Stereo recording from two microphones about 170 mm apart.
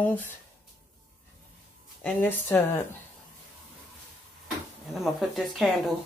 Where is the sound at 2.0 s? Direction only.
10° left (ahead or behind).